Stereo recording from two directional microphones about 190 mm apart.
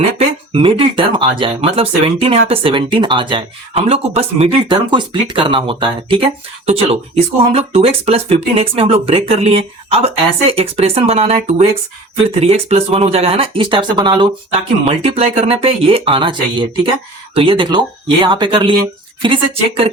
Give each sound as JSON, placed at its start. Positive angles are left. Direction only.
{"t": 0.2, "sound": "speech", "side_deg": -30}